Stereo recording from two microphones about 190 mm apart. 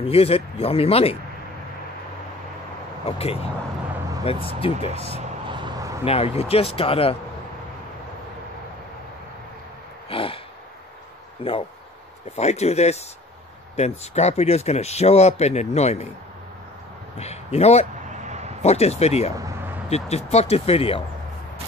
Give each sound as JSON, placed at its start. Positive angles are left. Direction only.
{"t": 0.0, "sound": "speech", "side_deg": 30}
{"t": 3.1, "sound": "speech", "side_deg": 30}
{"t": 5.5, "sound": "a sound", "side_deg": -20}
{"t": 6.0, "sound": "speech", "side_deg": 30}
{"t": 10.0, "sound": "gasp", "side_deg": 30}
{"t": 11.4, "sound": "speech", "side_deg": 30}
{"t": 17.2, "sound": "speech", "side_deg": 35}
{"t": 18.1, "sound": "a sound", "side_deg": -40}
{"t": 18.6, "sound": "speech", "side_deg": 35}